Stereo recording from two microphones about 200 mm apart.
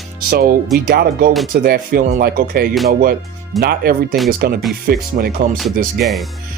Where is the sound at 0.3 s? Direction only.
50° right (ahead or behind).